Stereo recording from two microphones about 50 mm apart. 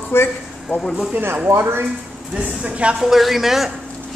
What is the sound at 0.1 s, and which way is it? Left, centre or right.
Speech, left.